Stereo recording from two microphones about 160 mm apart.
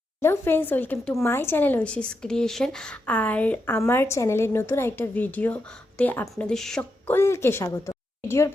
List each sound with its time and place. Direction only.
0.2 s speech: 15° left (ahead or behind)
7.1 s a woman's voice: 15° left (ahead or behind)